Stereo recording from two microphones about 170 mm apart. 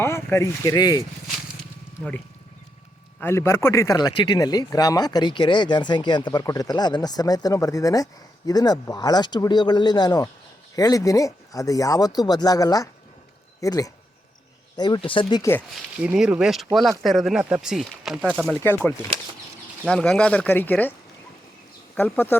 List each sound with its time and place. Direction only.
0.0 s speech: 15° left (ahead or behind)
3.2 s speech: 15° left (ahead or behind)
16.0 s speech: 5° right (ahead or behind)
18.4 s speech: 10° left (ahead or behind)
19.8 s speech: 5° left (ahead or behind)
21.9 s speech: 10° left (ahead or behind)